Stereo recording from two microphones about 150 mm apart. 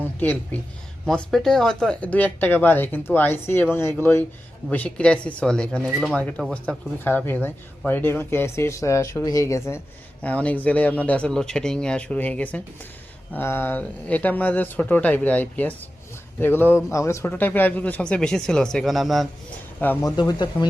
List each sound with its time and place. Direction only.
0.0 s speech: 15° left (ahead or behind)
19.8 s speech: 10° left (ahead or behind)
20.1 s speech: 25° left (ahead or behind)